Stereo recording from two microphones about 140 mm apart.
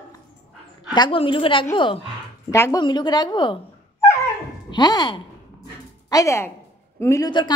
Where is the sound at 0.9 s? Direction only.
35° left (ahead or behind).